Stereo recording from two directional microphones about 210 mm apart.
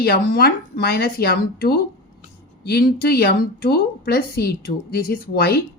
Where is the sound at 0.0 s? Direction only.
50° left (ahead or behind).